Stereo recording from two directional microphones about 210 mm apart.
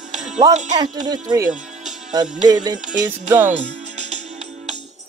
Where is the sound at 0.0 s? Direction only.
35° right (ahead or behind).